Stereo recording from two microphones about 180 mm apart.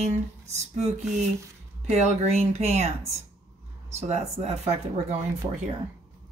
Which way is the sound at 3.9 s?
40° right (ahead or behind).